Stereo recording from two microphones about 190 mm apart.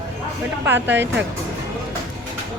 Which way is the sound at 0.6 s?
10° right (ahead or behind).